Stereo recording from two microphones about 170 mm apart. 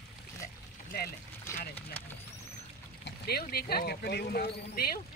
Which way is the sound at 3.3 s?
65° left (ahead or behind).